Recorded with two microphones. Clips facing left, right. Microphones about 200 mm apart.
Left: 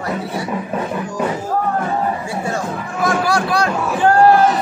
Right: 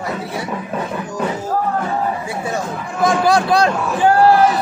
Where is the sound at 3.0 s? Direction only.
20° right (ahead or behind).